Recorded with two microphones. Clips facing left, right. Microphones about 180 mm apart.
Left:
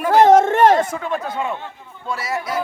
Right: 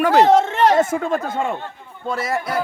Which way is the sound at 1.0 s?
45° right (ahead or behind).